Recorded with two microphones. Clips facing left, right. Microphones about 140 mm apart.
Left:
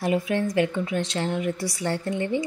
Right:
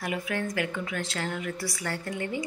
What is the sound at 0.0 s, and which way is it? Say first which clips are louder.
A woman's voice: left 7 dB; 25° left (ahead or behind).